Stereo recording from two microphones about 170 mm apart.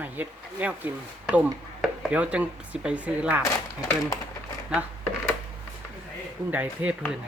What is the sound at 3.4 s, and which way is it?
Speech, 20° left (ahead or behind).